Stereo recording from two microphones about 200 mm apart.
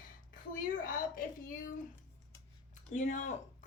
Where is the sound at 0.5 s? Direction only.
40° left (ahead or behind).